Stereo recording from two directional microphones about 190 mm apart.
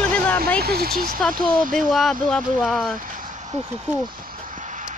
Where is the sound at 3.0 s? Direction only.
45° right (ahead or behind).